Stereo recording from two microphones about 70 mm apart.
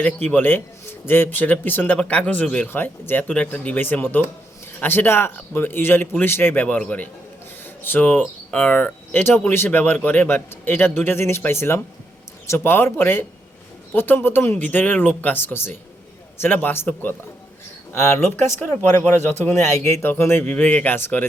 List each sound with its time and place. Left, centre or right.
0.0 s speech: left
2.0 s speech: centre
2.6 s a man's voice: left
7.6 s a sound: left
8.4 s a man's voice: left
20.5 s speech: left